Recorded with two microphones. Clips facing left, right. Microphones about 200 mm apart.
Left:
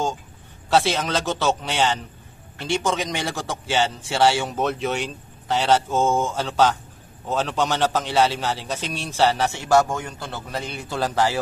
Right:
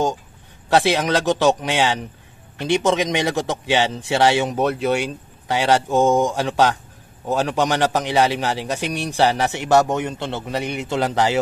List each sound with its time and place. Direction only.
0.7 s a man's voice: 15° right (ahead or behind)
4.6 s a man's voice: 10° right (ahead or behind)